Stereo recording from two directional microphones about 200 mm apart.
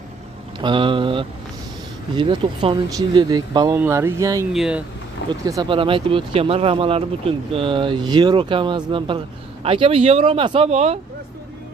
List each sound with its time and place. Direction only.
0.6 s speech: 25° right (ahead or behind)
4.5 s speech: 5° right (ahead or behind)
5.4 s speech: 20° right (ahead or behind)